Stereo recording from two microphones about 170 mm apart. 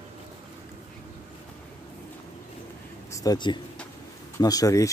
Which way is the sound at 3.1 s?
20° left (ahead or behind).